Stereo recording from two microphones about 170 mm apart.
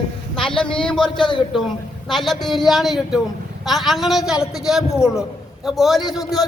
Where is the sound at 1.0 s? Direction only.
25° left (ahead or behind).